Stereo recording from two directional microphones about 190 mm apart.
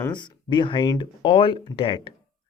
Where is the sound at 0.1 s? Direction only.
25° left (ahead or behind).